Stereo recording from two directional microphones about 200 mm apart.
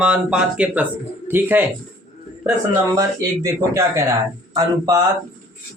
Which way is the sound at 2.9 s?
15° right (ahead or behind).